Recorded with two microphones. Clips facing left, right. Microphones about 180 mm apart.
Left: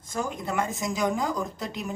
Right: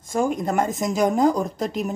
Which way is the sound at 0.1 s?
45° right (ahead or behind).